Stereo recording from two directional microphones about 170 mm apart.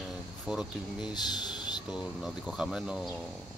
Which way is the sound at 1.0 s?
25° left (ahead or behind).